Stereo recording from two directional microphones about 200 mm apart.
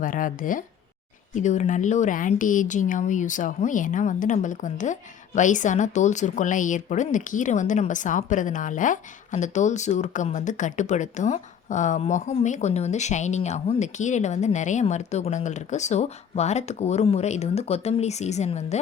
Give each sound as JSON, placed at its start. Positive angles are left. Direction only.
{"t": 0.0, "sound": "speech", "side_deg": 40}